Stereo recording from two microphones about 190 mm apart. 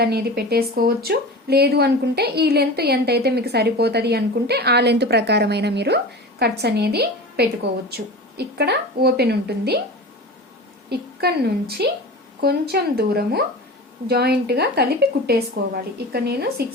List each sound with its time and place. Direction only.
0.0 s a woman's voice: 55° right (ahead or behind)
10.8 s speech: 55° right (ahead or behind)